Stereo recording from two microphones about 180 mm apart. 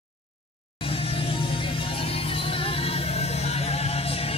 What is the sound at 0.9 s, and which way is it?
Music, 30° left (ahead or behind).